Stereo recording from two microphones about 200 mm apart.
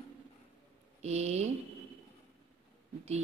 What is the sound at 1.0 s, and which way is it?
Speech, 35° right (ahead or behind).